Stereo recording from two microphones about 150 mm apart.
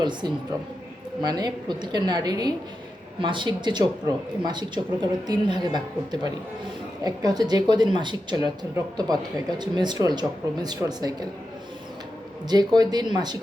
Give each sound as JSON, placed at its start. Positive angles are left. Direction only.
{"t": 0.0, "sound": "a woman's voice", "side_deg": -30}
{"t": 12.5, "sound": "speech", "side_deg": -25}